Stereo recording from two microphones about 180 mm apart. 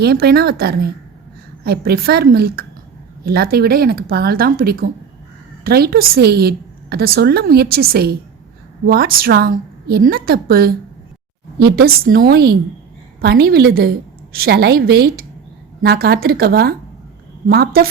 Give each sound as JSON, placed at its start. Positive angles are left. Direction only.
{"t": 0.0, "sound": "a woman's voice", "side_deg": -60}